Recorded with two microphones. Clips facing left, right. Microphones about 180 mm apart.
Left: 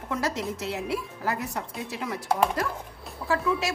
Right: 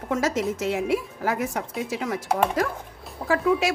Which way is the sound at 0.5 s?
50° right (ahead or behind).